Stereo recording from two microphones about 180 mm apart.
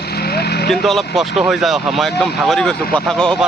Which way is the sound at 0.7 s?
Centre (ahead or behind).